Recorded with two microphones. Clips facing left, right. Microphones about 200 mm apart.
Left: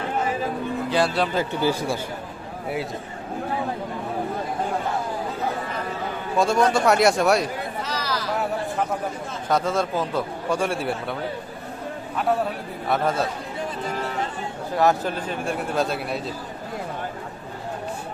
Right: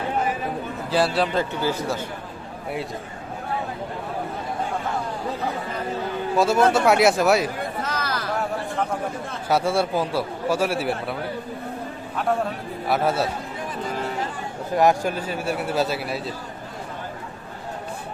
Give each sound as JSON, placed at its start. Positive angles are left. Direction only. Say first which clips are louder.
{"t": 0.9, "sound": "a man's voice", "louder": "right 2 dB", "side_deg": 0}
{"t": 1.6, "sound": "speech", "louder": "left 2 dB", "side_deg": 10}
{"t": 6.3, "sound": "a man's voice", "louder": "right 1 dB", "side_deg": -5}
{"t": 7.8, "sound": "a sound", "louder": "even", "side_deg": -55}
{"t": 9.5, "sound": "speech", "louder": "right 1 dB", "side_deg": -10}
{"t": 12.9, "sound": "speech", "louder": "right 1 dB", "side_deg": -5}
{"t": 14.8, "sound": "a man's voice", "louder": "right 2 dB", "side_deg": -15}